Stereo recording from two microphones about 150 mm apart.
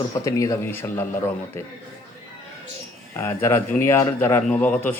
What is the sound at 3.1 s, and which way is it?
A man's voice, 15° left (ahead or behind).